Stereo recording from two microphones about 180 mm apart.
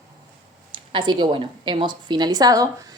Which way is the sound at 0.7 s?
25° right (ahead or behind).